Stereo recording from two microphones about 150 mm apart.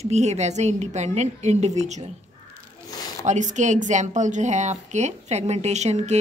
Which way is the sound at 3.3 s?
55° right (ahead or behind).